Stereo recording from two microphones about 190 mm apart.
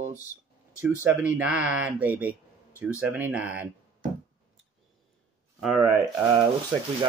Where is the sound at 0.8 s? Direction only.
10° right (ahead or behind).